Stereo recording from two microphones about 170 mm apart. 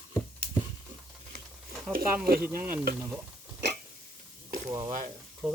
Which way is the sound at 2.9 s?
10° right (ahead or behind).